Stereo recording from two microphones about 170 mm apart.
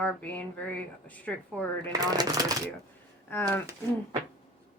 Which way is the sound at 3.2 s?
10° left (ahead or behind).